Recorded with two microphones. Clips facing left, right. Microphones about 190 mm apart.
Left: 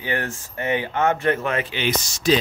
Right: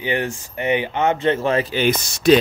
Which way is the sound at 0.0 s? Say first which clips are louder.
Right 4 dB; 20° right (ahead or behind).